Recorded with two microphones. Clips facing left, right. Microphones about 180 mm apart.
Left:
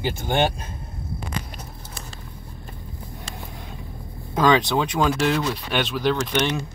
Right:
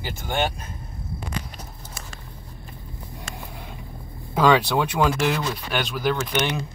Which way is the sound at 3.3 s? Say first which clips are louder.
Right 1 dB; 35° left (ahead or behind).